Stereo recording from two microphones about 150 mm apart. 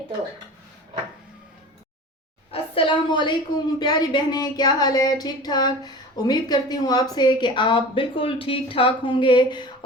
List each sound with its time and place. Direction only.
2.5 s a woman's voice: 35° left (ahead or behind)